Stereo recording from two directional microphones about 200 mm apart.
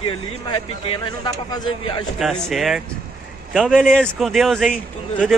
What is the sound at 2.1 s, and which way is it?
A man's voice, centre (ahead or behind).